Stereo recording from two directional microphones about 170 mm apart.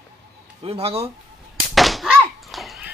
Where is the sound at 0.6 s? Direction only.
35° right (ahead or behind).